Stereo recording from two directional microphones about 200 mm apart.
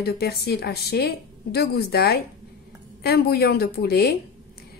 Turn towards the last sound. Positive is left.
turn(degrees=50)  # may be behind; listen again after turning